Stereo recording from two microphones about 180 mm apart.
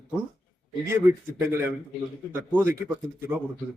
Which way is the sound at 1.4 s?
15° right (ahead or behind).